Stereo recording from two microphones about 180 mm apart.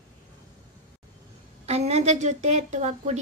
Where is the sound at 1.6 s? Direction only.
35° right (ahead or behind).